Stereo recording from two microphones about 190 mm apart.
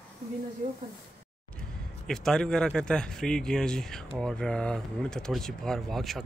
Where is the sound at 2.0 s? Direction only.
5° left (ahead or behind).